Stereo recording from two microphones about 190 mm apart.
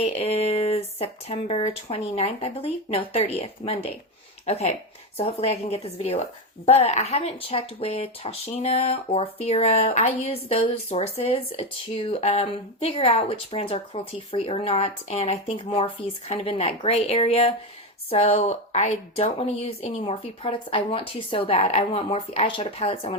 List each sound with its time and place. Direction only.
0.0 s speech: 35° left (ahead or behind)